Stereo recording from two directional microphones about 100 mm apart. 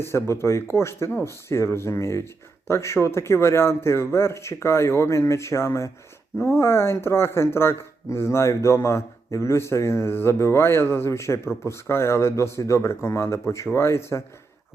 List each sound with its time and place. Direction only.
0.0 s speech: 25° left (ahead or behind)